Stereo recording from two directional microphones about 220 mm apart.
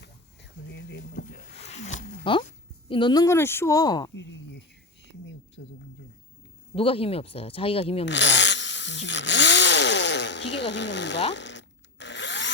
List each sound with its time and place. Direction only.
0.6 s a sound: 50° left (ahead or behind)
1.5 s zipper: 30° left (ahead or behind)
2.9 s speech: 20° left (ahead or behind)
4.1 s a sound: 55° left (ahead or behind)
6.7 s speech: 25° left (ahead or behind)
8.0 s chainsaw: 55° left (ahead or behind)
11.3 s power tool: 55° left (ahead or behind)